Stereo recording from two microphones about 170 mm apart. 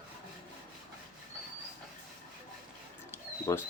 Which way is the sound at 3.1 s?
15° left (ahead or behind).